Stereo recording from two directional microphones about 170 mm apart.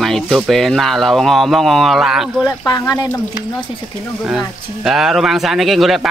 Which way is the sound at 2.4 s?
20° left (ahead or behind).